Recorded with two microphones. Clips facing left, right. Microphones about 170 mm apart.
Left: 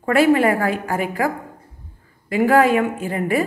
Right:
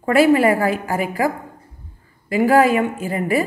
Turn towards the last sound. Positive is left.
turn(degrees=-5)  # may be behind; listen again after turning